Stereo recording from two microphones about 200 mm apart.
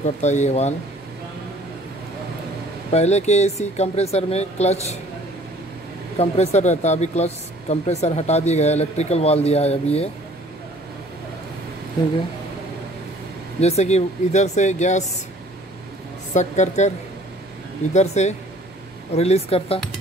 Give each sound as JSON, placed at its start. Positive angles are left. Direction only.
{"t": 0.0, "sound": "speech", "side_deg": 35}
{"t": 2.9, "sound": "speech", "side_deg": 35}
{"t": 6.1, "sound": "speech", "side_deg": 30}
{"t": 13.6, "sound": "speech", "side_deg": 30}
{"t": 16.3, "sound": "speech", "side_deg": 35}
{"t": 17.9, "sound": "speech", "side_deg": 35}